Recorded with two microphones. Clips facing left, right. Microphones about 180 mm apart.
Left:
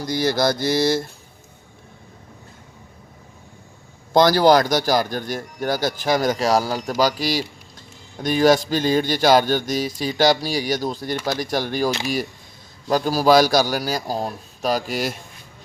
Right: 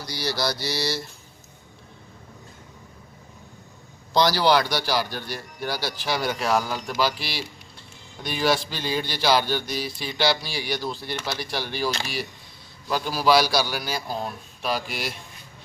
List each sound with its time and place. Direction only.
0.0 s speech: 50° left (ahead or behind)
4.1 s speech: 50° left (ahead or behind)
12.9 s speech: 40° left (ahead or behind)